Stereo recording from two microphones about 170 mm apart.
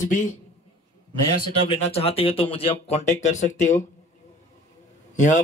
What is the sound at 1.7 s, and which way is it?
Speech, 35° left (ahead or behind).